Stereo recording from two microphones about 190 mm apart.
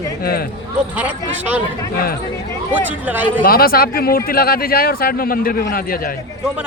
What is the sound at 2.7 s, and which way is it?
Speech, 10° right (ahead or behind).